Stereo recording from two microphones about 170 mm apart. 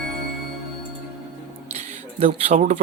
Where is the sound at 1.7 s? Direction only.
40° right (ahead or behind).